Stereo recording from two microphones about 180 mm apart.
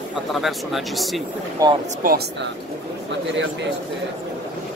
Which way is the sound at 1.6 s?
20° right (ahead or behind).